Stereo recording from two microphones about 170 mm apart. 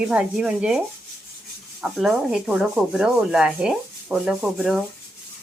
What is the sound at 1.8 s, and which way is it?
Speech, centre (ahead or behind).